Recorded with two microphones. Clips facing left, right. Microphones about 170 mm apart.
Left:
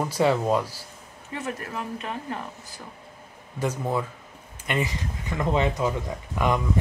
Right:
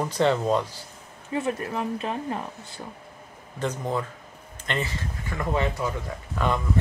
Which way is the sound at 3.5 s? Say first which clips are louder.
Left 1 dB; 10° left (ahead or behind).